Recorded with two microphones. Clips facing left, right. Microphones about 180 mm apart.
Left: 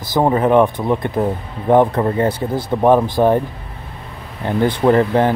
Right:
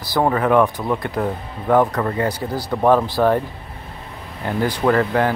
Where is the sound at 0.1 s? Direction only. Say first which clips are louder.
Left 3 dB; 20° left (ahead or behind).